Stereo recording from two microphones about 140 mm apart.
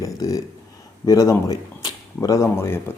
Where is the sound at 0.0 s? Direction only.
25° left (ahead or behind).